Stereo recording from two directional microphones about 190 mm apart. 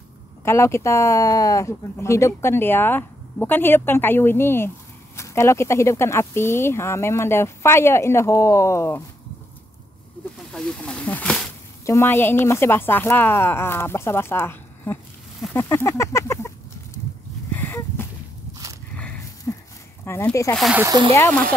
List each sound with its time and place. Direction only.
0.5 s speech: 15° left (ahead or behind)
10.5 s snake: 5° left (ahead or behind)
11.9 s speech: 10° left (ahead or behind)
15.5 s a sound: 15° left (ahead or behind)
20.1 s speech: 15° left (ahead or behind)
20.5 s speech: centre (ahead or behind)
20.8 s speech: 20° right (ahead or behind)
21.1 s speech: 15° left (ahead or behind)